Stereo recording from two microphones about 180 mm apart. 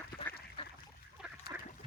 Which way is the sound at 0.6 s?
30° left (ahead or behind).